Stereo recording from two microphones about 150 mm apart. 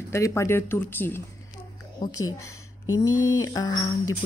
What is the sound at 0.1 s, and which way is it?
Speech, 20° left (ahead or behind).